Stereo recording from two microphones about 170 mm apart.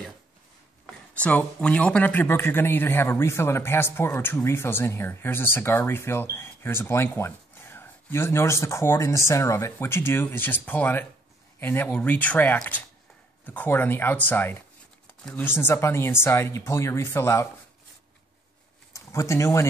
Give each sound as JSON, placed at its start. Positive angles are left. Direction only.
{"t": 0.8, "sound": "a man's voice", "side_deg": 10}
{"t": 18.9, "sound": "speech", "side_deg": 15}